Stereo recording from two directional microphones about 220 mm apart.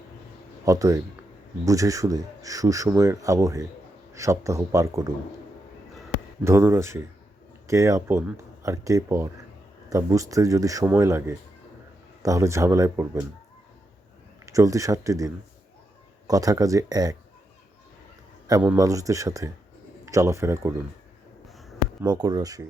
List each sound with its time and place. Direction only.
0.6 s speech: 15° right (ahead or behind)
6.4 s speech: 10° right (ahead or behind)
14.4 s speech: 15° right (ahead or behind)
18.4 s a man's voice: 15° right (ahead or behind)
21.4 s a sound: centre (ahead or behind)
22.0 s speech: 20° right (ahead or behind)